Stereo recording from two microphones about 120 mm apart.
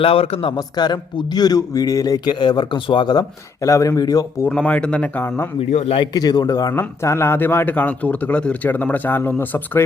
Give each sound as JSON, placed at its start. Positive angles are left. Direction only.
{"t": 0.0, "sound": "a man's voice", "side_deg": 50}
{"t": 0.5, "sound": "a man's voice", "side_deg": 35}
{"t": 4.4, "sound": "speech", "side_deg": 10}
{"t": 5.7, "sound": "a man's voice", "side_deg": 55}
{"t": 6.1, "sound": "a man's voice", "side_deg": 35}